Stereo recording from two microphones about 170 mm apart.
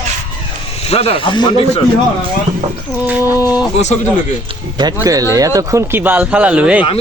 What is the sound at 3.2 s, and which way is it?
Speech, 20° left (ahead or behind).